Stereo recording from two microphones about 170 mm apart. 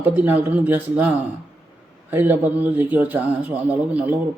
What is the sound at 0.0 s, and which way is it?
A man's voice, 10° right (ahead or behind).